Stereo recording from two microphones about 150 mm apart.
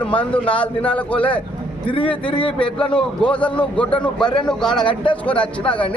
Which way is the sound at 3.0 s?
5° left (ahead or behind).